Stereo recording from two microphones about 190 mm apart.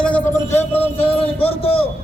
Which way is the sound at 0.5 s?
10° left (ahead or behind).